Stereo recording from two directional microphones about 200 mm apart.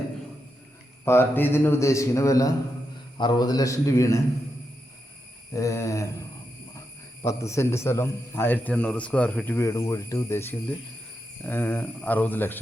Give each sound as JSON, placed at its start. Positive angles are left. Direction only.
{"t": 1.0, "sound": "a man's voice", "side_deg": 10}
{"t": 5.5, "sound": "a man's voice", "side_deg": 15}